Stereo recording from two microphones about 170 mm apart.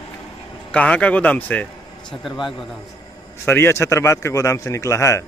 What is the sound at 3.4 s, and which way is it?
A man's voice, 15° left (ahead or behind).